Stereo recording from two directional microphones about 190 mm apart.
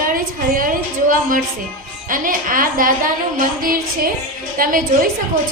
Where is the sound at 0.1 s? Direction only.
45° right (ahead or behind).